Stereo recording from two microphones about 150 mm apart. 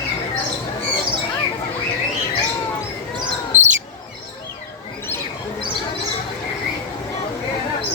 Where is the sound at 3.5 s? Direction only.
10° right (ahead or behind).